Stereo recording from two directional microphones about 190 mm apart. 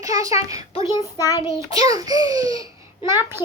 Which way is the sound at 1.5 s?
20° right (ahead or behind).